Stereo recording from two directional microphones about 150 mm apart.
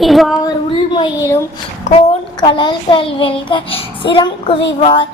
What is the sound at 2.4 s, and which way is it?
Child singing, 30° left (ahead or behind).